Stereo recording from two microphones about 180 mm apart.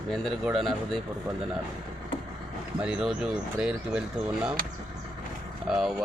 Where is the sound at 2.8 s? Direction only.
5° right (ahead or behind).